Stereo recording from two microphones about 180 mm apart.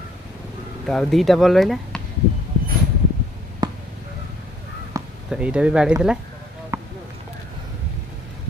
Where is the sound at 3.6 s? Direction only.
25° right (ahead or behind).